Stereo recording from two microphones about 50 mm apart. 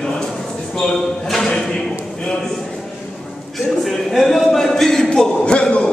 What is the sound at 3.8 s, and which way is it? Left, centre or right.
A man's voice, centre.